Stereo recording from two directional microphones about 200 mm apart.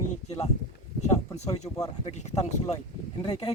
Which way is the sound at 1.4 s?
35° left (ahead or behind).